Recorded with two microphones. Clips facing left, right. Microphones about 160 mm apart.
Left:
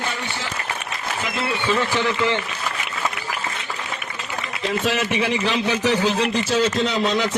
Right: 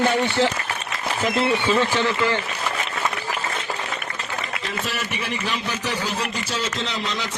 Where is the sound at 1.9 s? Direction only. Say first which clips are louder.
Even; 15° right (ahead or behind).